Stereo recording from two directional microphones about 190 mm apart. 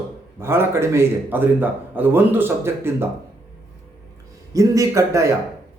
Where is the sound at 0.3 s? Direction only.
10° right (ahead or behind).